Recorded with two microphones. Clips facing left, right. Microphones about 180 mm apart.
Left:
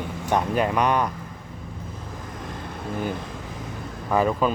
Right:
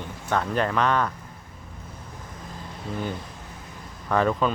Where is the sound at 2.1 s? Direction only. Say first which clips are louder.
Left 5 dB; 90° left.